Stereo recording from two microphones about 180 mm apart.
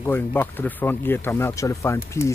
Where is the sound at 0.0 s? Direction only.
10° left (ahead or behind).